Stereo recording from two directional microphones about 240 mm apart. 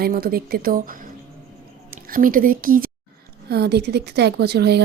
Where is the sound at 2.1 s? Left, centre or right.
Right.